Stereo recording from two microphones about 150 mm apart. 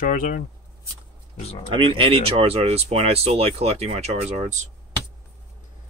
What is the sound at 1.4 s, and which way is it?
Speech, 45° left (ahead or behind).